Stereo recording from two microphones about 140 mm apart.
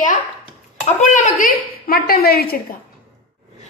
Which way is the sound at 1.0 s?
65° left (ahead or behind).